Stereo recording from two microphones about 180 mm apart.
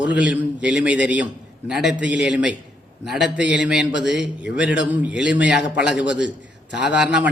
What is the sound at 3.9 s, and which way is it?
Speech, 80° left.